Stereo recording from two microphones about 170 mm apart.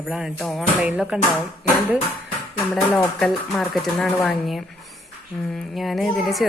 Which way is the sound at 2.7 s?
5° left (ahead or behind).